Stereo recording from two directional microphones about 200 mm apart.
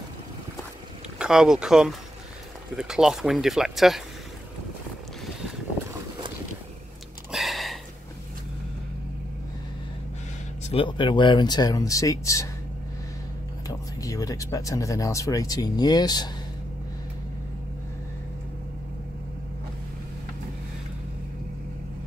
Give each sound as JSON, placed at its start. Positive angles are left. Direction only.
{"t": 1.1, "sound": "speech", "side_deg": -5}
{"t": 7.2, "sound": "a sound", "side_deg": 0}
{"t": 10.7, "sound": "speech", "side_deg": 25}
{"t": 13.7, "sound": "speech", "side_deg": 15}